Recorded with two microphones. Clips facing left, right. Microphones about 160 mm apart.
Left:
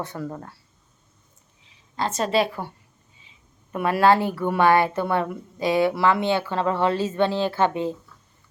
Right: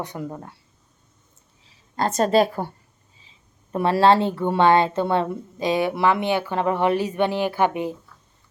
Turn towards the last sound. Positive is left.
turn(degrees=-15)  # may be behind; listen again after turning